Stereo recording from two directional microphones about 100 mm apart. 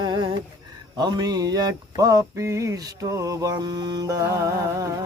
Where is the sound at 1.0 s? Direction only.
45° right (ahead or behind).